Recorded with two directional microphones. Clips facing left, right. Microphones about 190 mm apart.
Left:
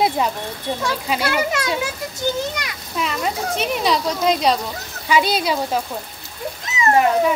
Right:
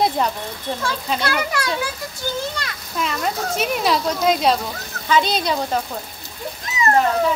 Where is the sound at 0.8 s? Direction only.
10° left (ahead or behind).